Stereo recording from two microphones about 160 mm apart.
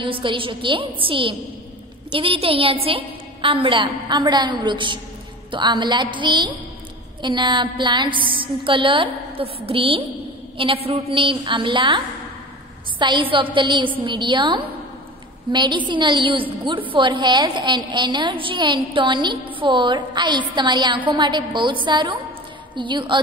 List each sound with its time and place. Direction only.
0.0 s a woman's voice: 30° right (ahead or behind)
13.0 s a woman's voice: 30° right (ahead or behind)